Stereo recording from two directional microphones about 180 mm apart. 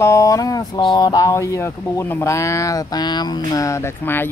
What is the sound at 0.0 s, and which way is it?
Speech, 15° left (ahead or behind).